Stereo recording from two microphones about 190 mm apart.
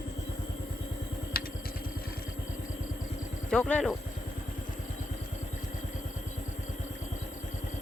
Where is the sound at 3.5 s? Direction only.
5° left (ahead or behind).